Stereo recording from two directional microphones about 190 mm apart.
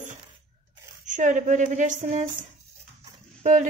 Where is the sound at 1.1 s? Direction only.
40° right (ahead or behind).